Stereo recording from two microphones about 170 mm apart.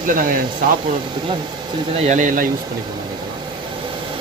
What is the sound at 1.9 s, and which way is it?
Speech, 45° right (ahead or behind).